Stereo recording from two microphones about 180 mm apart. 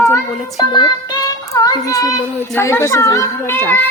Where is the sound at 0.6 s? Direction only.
25° left (ahead or behind).